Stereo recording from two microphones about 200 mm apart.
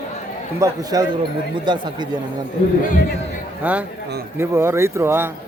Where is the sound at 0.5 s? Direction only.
15° right (ahead or behind).